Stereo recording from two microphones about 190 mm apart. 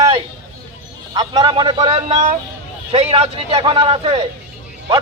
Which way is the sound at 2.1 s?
40° right (ahead or behind).